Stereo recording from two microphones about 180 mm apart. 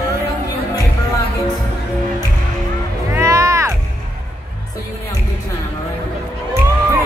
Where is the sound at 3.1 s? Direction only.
15° right (ahead or behind).